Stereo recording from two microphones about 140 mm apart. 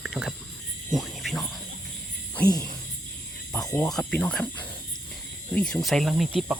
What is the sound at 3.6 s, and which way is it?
Speech, 20° left (ahead or behind).